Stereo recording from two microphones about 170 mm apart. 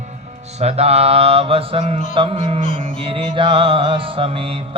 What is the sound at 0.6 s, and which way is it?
Mantra, 40° right (ahead or behind).